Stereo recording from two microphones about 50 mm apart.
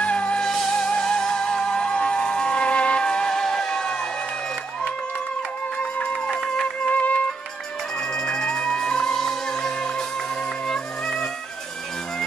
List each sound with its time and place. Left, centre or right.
0.0 s music: left
6.9 s music: left
8.3 s music: centre